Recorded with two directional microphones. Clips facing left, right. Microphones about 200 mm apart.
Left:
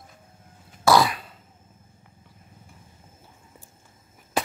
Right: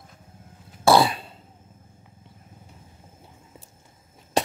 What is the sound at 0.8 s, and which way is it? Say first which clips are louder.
Cough: right 1 dB; 30° right (ahead or behind).